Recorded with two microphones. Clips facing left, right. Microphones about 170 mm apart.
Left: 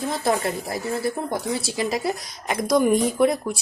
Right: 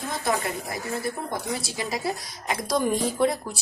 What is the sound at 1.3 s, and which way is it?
Speech, 25° left (ahead or behind).